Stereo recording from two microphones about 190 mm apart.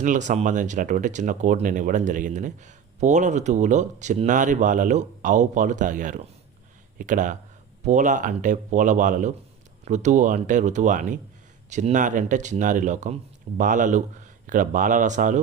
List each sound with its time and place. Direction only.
0.0 s speech: 40° right (ahead or behind)